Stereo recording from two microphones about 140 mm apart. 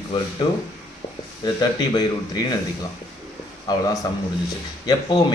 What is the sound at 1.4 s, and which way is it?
A man's voice, 30° left (ahead or behind).